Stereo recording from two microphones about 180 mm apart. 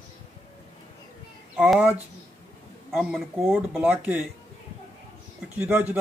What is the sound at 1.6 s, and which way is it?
Speech, 5° right (ahead or behind).